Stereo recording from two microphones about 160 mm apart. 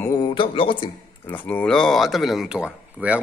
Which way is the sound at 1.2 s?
10° left (ahead or behind).